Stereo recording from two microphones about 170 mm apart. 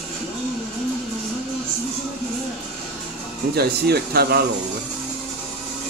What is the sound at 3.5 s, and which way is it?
Speech, 70° right (ahead or behind).